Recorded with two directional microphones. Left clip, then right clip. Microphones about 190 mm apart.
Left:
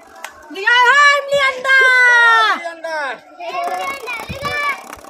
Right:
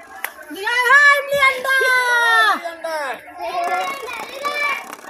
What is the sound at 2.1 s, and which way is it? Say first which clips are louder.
Baby cry: left 4 dB; 20° left (ahead or behind).